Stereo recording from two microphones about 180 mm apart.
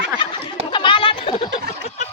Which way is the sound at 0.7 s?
30° left (ahead or behind).